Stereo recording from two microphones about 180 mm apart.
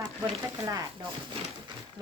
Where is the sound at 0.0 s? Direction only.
20° right (ahead or behind).